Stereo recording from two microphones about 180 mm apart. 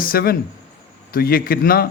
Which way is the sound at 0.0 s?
55° left (ahead or behind).